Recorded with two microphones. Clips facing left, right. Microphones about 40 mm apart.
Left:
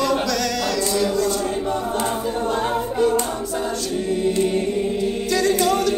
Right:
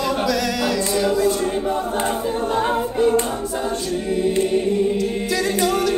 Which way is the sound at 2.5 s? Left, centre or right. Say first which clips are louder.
Right 3 dB; centre.